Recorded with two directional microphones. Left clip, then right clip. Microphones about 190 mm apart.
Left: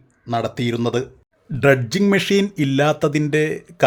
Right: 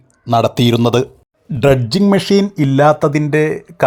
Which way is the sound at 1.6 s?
20° right (ahead or behind).